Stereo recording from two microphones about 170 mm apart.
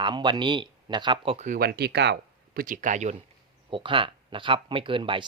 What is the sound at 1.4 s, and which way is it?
Speech, 60° right (ahead or behind).